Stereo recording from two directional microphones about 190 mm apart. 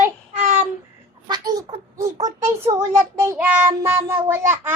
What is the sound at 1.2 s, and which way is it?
A woman's voice, 20° right (ahead or behind).